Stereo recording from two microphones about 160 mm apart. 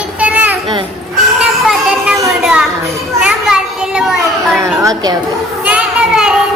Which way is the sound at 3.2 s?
5° right (ahead or behind).